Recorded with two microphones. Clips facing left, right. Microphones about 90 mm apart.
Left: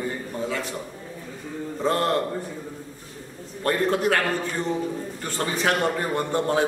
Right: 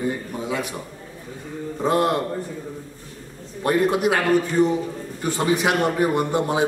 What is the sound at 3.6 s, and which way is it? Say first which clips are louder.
A man's voice: right 3 dB; 15° right (ahead or behind).